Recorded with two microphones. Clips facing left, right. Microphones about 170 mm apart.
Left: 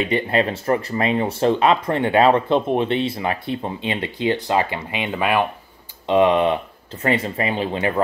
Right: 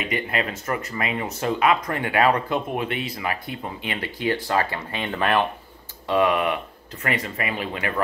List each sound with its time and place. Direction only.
0.0 s speech: 30° left (ahead or behind); by 5.5 s 10° left (ahead or behind)
6.0 s speech: 25° left (ahead or behind)